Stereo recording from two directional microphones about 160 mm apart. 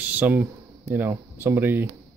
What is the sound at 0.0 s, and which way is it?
Speech, 10° right (ahead or behind).